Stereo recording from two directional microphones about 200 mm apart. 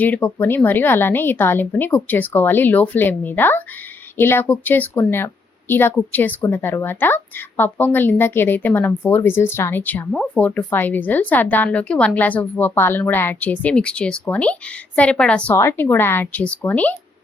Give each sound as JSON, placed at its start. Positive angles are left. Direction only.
{"t": 0.0, "sound": "a woman's voice", "side_deg": 10}